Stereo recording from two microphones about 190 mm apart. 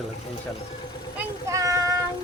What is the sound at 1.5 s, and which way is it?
Child singing, 15° right (ahead or behind).